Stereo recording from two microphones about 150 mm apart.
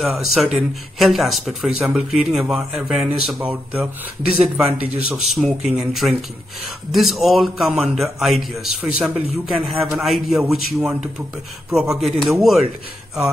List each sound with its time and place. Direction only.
0.0 s a man's voice: centre (ahead or behind)